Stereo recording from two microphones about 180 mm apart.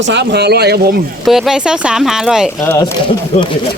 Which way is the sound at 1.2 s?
Centre (ahead or behind).